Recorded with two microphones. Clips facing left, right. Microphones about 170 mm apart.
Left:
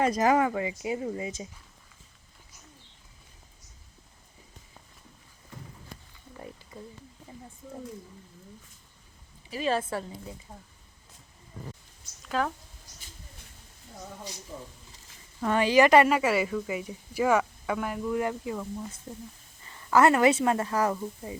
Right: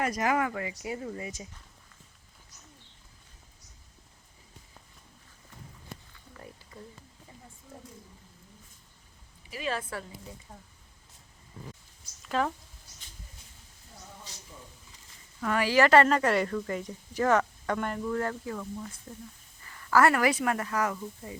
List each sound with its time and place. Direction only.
0.0 s speech: 25° left (ahead or behind)
9.5 s a woman's voice: 30° left (ahead or behind)
10.5 s speech: 10° left (ahead or behind)
12.2 s speech: centre (ahead or behind)
15.4 s speech: 25° left (ahead or behind)